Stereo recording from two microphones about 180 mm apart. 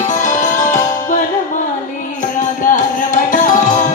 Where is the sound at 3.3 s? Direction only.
45° left (ahead or behind).